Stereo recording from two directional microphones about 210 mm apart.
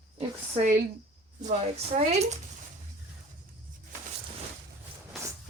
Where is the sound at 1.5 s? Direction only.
30° right (ahead or behind).